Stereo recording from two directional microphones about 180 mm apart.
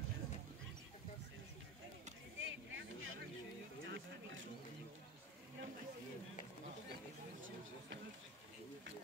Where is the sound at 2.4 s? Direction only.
90° right.